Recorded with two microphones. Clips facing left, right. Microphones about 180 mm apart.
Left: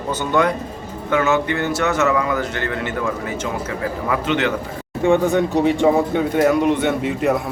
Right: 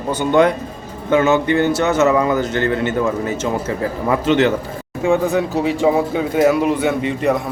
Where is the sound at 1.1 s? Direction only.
25° right (ahead or behind).